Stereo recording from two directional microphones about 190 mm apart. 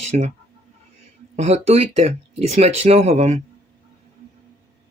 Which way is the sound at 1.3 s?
35° right (ahead or behind).